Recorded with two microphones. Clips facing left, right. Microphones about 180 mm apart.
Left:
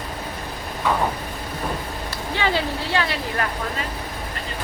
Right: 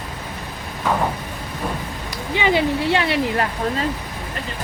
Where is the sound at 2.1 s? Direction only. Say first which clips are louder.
Right 4 dB; 15° right (ahead or behind).